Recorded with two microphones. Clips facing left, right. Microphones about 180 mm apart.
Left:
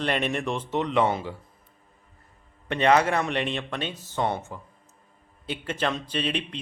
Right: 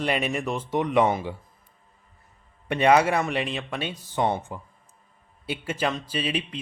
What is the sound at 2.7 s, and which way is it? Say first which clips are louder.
Speech: right 2 dB; 10° right (ahead or behind).